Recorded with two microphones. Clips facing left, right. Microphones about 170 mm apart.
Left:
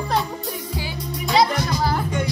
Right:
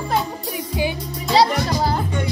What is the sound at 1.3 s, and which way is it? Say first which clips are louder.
Music: right 2 dB; 35° right (ahead or behind).